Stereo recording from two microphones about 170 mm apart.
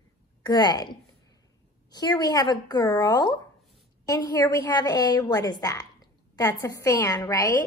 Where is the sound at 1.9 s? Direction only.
25° left (ahead or behind).